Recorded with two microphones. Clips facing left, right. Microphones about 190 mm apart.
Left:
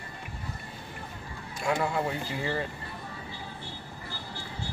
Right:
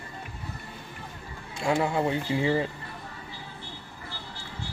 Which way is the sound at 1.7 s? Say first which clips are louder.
Right 3 dB; 25° right (ahead or behind).